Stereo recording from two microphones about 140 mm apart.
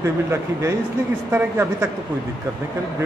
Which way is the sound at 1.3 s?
15° right (ahead or behind).